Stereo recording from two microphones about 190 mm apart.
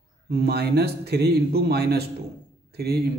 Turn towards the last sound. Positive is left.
turn(degrees=-60)  # may be behind; listen again after turning